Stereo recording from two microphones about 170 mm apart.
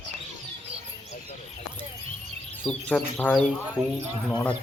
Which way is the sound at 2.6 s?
5° left (ahead or behind).